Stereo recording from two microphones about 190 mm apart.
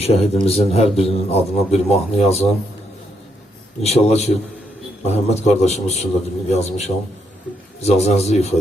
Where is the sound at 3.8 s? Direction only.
35° left (ahead or behind).